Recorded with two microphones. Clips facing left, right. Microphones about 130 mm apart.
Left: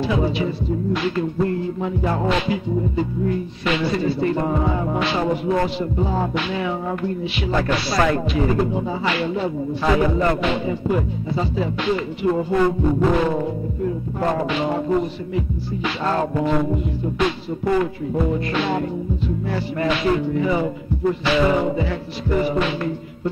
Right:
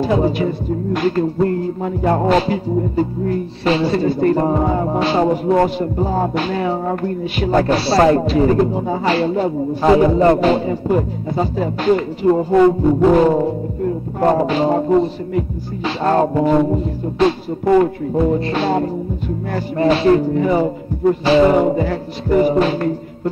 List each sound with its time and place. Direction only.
0.0 s music: 45° right (ahead or behind)
7.6 s music: 30° right (ahead or behind)